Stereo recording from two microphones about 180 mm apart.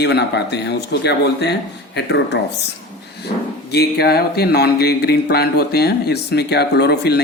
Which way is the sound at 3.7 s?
65° left (ahead or behind).